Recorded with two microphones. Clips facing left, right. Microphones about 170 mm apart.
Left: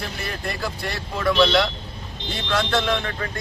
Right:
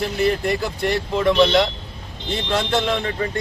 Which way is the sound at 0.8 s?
20° right (ahead or behind).